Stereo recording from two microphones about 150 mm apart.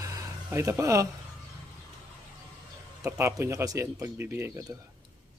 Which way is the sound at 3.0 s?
20° right (ahead or behind).